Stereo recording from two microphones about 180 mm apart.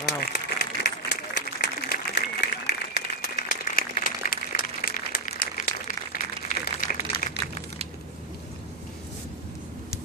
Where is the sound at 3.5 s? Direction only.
50° left (ahead or behind).